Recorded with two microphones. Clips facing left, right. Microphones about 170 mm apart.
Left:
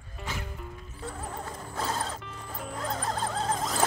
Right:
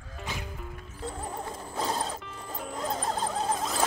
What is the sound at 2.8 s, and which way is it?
Squeal, 15° right (ahead or behind).